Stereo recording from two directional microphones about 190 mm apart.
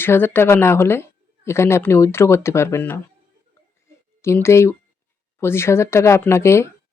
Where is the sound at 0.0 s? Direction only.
10° left (ahead or behind).